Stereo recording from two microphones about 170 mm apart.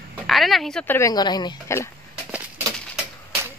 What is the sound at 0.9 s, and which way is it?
Speech, 20° left (ahead or behind).